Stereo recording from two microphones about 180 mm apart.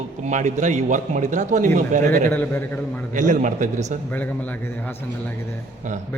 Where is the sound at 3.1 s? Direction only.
45° right (ahead or behind).